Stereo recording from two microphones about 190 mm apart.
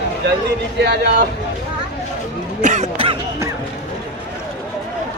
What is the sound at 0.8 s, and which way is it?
Speech, 60° right (ahead or behind).